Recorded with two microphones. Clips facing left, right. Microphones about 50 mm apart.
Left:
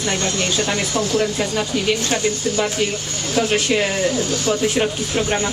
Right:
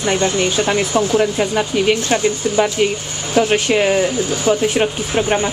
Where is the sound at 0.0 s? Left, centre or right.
Centre.